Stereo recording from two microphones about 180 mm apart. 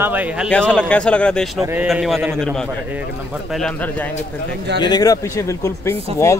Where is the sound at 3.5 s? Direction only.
5° left (ahead or behind).